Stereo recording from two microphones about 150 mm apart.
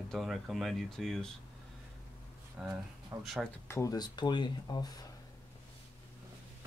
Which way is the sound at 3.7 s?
20° left (ahead or behind).